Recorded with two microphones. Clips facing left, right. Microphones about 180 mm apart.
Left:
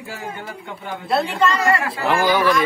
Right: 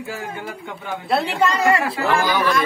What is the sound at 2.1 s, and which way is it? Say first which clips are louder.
Speech: left 3 dB; 15° left (ahead or behind).